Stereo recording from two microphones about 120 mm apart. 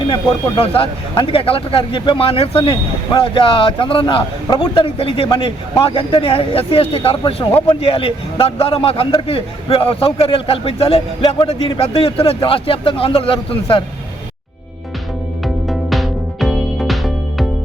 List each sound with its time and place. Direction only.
0.0 s a man's voice: 45° left (ahead or behind)
15.7 s music: centre (ahead or behind)